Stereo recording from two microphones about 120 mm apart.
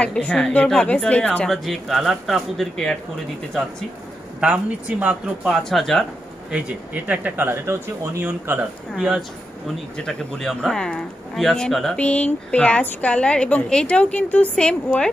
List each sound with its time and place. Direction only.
0.0 s a woman's voice: 10° left (ahead or behind)
4.4 s a woman's voice: 10° right (ahead or behind)
6.5 s speech: 15° right (ahead or behind)
8.9 s a woman's voice: centre (ahead or behind)